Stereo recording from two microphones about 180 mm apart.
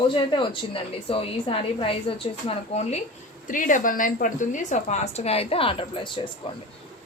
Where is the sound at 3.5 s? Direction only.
45° left (ahead or behind); by 6.3 s 25° left (ahead or behind).